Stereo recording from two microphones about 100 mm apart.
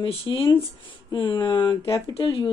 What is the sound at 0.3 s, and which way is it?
A woman's voice, 40° left (ahead or behind).